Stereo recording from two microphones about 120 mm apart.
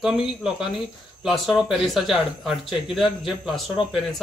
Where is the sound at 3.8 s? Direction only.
45° left (ahead or behind).